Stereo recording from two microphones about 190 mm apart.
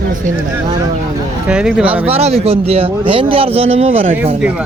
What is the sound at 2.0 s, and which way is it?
Speech, 35° right (ahead or behind).